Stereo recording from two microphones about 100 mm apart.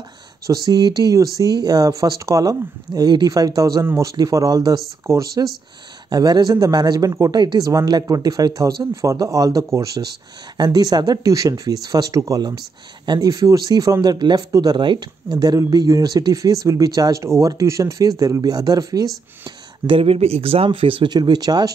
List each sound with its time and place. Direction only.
0.5 s speech: 40° right (ahead or behind)
3.8 s speech: 25° right (ahead or behind)
4.1 s speech: 35° right (ahead or behind)
14.1 s speech: 50° right (ahead or behind)
19.9 s speech: 75° right (ahead or behind); by 21.7 s 40° right (ahead or behind)